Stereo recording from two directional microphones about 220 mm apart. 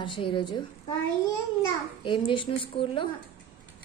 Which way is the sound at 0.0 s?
20° left (ahead or behind).